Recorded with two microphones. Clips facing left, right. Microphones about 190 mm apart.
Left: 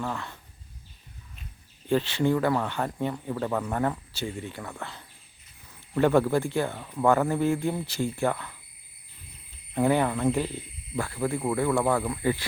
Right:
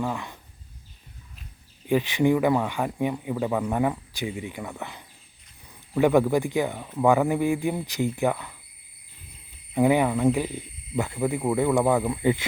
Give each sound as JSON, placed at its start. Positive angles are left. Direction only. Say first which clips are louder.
{"t": 0.0, "sound": "speech", "louder": "right 3 dB", "side_deg": -15}
{"t": 1.9, "sound": "speech", "louder": "right 3 dB", "side_deg": -15}
{"t": 9.7, "sound": "speech", "louder": "right 3 dB", "side_deg": -15}